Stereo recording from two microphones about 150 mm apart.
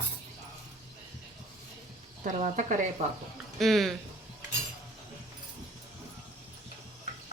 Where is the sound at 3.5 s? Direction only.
Centre (ahead or behind).